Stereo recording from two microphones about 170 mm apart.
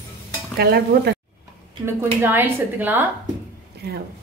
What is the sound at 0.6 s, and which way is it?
Stir, 65° right (ahead or behind).